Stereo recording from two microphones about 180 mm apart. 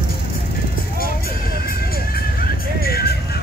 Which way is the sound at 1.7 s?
55° left (ahead or behind).